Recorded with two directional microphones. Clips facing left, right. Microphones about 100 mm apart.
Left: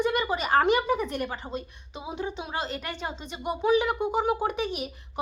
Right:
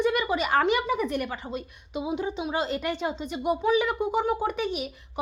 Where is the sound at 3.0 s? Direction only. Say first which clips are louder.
Right 4 dB; 5° right (ahead or behind).